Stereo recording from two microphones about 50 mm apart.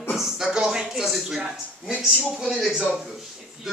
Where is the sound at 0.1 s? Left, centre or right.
Centre.